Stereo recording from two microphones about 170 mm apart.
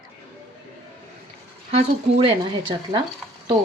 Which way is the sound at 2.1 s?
30° right (ahead or behind).